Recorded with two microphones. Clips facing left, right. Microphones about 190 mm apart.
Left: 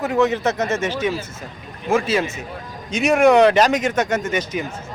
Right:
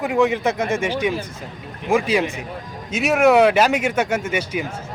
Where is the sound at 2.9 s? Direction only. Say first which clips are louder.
Left 1 dB; 5° right (ahead or behind).